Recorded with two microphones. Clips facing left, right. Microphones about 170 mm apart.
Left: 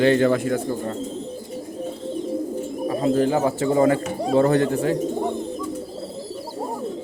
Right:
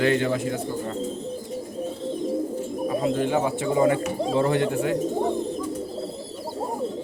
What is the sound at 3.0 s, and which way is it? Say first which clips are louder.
A man's voice: left 5 dB; 40° left (ahead or behind).